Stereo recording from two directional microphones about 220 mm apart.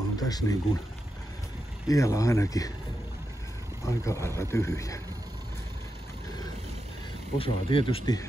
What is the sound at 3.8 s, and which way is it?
Speech, 15° left (ahead or behind).